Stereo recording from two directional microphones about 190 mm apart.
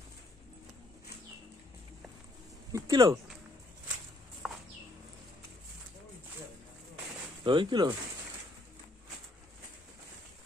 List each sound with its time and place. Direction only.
2.7 s speech: 20° right (ahead or behind)
4.4 s bird: centre (ahead or behind)
7.4 s speech: 25° right (ahead or behind)